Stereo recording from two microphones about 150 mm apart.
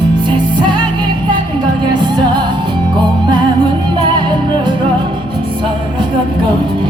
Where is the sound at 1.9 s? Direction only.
30° right (ahead or behind).